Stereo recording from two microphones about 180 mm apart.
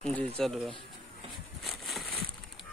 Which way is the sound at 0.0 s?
5° left (ahead or behind).